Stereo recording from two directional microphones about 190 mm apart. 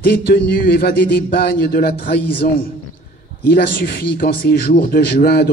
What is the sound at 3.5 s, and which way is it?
A man's voice, 55° left (ahead or behind).